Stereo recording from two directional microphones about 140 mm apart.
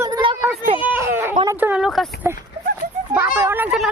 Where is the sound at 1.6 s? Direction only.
10° right (ahead or behind).